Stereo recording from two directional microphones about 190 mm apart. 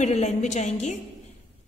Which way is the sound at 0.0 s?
35° left (ahead or behind).